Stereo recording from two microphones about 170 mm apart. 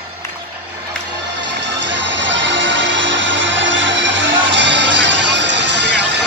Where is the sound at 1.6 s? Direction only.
90° right.